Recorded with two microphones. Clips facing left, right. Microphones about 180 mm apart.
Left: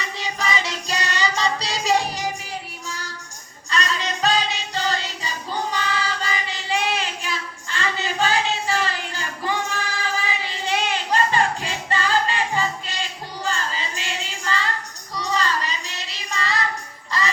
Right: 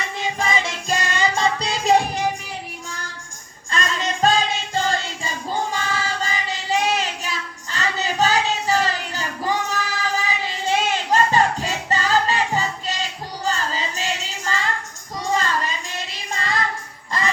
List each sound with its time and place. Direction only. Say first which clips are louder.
0.0 s music: right 3 dB; 50° right (ahead or behind)
3.7 s music: right 1 dB; 50° right (ahead or behind)
5.7 s child singing: even; 45° right (ahead or behind)
7.7 s a sound: right 1 dB; 40° right (ahead or behind)
10.2 s child singing: right 3 dB; 45° right (ahead or behind)
17.1 s jingle bell: right 1 dB; 50° right (ahead or behind)